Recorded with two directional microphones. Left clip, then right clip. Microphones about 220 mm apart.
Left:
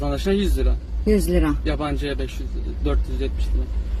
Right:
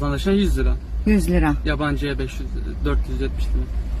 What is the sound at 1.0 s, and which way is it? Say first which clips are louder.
Speech: left 1 dB; 30° right (ahead or behind).